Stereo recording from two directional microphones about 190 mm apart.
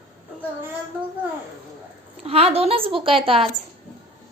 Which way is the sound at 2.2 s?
30° right (ahead or behind).